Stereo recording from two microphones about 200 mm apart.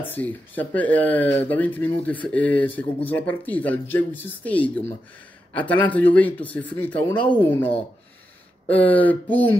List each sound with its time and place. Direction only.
0.1 s speech: 10° left (ahead or behind)